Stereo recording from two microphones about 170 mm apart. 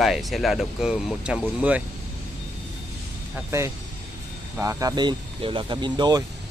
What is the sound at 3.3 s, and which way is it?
Speech, 15° right (ahead or behind).